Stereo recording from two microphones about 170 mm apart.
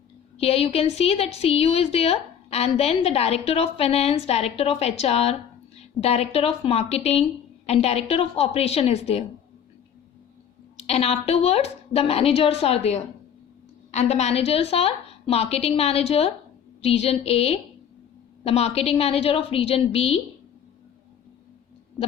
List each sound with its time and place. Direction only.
0.3 s a woman's voice: 35° left (ahead or behind)
10.8 s a woman's voice: 35° left (ahead or behind)